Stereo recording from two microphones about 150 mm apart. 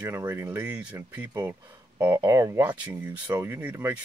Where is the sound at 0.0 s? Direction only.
15° right (ahead or behind).